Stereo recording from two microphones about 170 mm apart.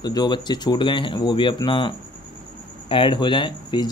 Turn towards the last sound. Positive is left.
turn(degrees=25)  # may be behind; listen again after turning